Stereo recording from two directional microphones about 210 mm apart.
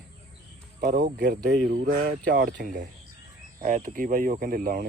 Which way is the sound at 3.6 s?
40° right (ahead or behind).